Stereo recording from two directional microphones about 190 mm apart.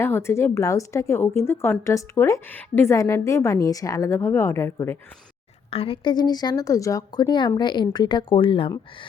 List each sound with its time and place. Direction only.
0.0 s a woman's voice: 15° left (ahead or behind)
5.7 s a woman's voice: 30° left (ahead or behind)